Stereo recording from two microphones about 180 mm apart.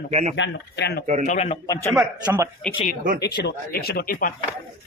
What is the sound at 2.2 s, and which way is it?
Speech, 15° right (ahead or behind).